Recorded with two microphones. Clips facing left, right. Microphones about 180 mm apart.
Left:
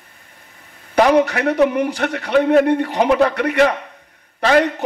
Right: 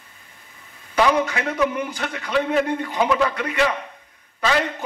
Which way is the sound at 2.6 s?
70° left (ahead or behind).